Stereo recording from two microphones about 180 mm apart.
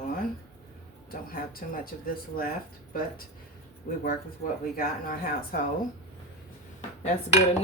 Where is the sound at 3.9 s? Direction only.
50° left (ahead or behind).